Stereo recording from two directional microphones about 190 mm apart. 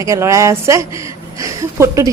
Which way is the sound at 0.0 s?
15° right (ahead or behind).